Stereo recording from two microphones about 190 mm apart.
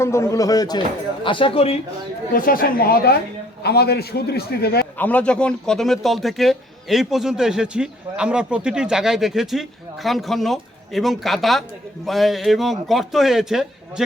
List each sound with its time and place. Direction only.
0.0 s a man's voice: 15° left (ahead or behind); by 1.8 s 30° left (ahead or behind)
2.3 s a man's voice: 50° left (ahead or behind)
4.9 s a man's voice: 10° left (ahead or behind)